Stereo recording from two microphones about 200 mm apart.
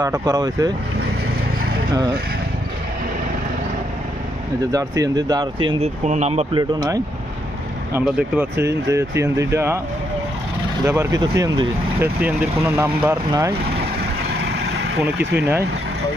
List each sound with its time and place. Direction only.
0.0 s speech: 15° right (ahead or behind)
1.9 s speech: 20° right (ahead or behind)
4.6 s speech: 15° right (ahead or behind)
5.6 s speech: 35° right (ahead or behind)
6.6 s speech: 20° right (ahead or behind)
10.8 s speech: 15° right (ahead or behind)